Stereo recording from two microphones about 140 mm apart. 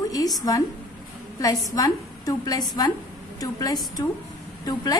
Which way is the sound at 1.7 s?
25° left (ahead or behind).